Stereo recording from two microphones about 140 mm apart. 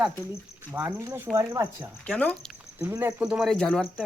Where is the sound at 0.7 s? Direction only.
20° right (ahead or behind).